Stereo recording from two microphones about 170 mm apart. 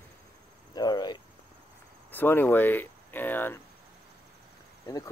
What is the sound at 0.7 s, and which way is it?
Cricket, 25° left (ahead or behind).